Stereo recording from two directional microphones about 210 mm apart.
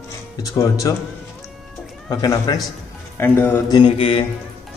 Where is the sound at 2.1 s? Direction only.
20° left (ahead or behind).